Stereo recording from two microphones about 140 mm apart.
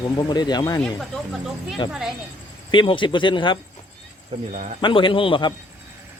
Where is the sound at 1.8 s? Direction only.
30° left (ahead or behind).